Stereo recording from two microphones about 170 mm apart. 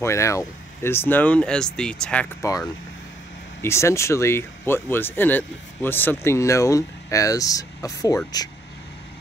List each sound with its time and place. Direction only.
0.0 s speech: 15° left (ahead or behind)
2.4 s speech: 20° left (ahead or behind)